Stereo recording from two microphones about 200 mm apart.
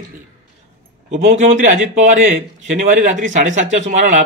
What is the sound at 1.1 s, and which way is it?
Speech, 35° right (ahead or behind).